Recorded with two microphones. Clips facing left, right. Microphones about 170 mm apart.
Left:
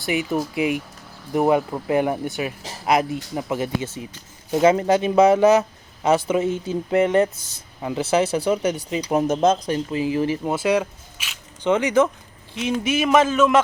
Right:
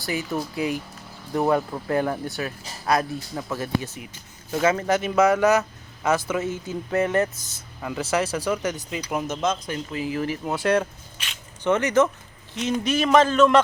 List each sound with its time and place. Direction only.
0.0 s speech: 15° left (ahead or behind)
10.5 s single-lens reflex camera: 5° left (ahead or behind)
12.5 s speech: 10° left (ahead or behind)